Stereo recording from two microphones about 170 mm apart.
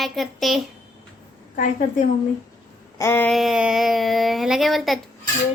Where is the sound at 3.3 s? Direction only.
Centre (ahead or behind).